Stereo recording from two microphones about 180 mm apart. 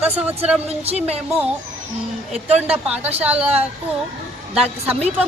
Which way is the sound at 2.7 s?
5° right (ahead or behind).